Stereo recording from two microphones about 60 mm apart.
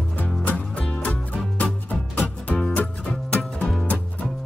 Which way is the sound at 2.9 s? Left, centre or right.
Centre.